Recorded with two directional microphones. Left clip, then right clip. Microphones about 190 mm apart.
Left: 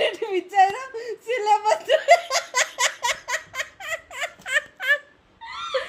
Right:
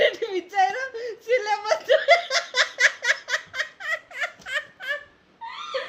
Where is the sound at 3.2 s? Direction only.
10° left (ahead or behind).